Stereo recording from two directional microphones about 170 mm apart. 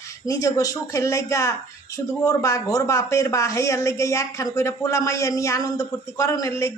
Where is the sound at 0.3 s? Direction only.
20° left (ahead or behind).